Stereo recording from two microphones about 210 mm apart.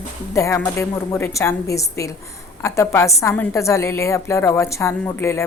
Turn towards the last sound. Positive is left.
turn(degrees=10)  # may be behind; listen again after turning